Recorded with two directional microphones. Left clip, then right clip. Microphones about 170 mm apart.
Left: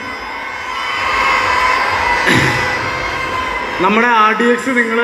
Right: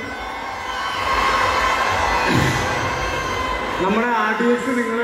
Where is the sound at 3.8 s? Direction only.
25° left (ahead or behind).